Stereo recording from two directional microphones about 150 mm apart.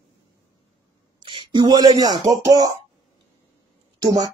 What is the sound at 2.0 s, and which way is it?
Speech, 25° right (ahead or behind).